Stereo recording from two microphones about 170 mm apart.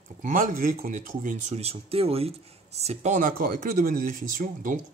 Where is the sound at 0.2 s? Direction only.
50° right (ahead or behind).